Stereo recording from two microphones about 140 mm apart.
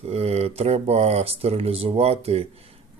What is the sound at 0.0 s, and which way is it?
Speech, 45° right (ahead or behind).